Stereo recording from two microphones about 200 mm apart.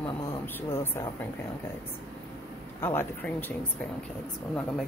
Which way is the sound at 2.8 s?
10° left (ahead or behind).